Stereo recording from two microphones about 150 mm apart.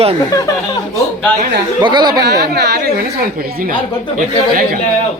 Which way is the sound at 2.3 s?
90° right.